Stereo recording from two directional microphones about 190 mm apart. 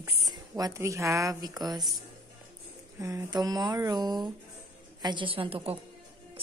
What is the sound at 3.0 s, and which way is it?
A woman's voice, 15° right (ahead or behind).